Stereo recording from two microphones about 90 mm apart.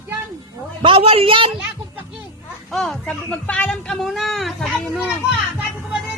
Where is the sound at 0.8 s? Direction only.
90° right.